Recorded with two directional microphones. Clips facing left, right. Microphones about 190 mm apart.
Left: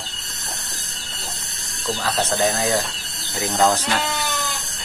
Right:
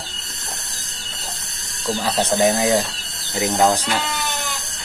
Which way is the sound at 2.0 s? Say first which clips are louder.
Right 3 dB; 15° right (ahead or behind).